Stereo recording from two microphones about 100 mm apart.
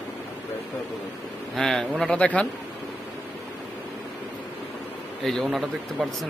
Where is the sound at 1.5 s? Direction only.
5° left (ahead or behind).